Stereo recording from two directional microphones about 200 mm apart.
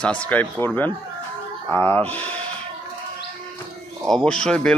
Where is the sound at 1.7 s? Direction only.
10° left (ahead or behind).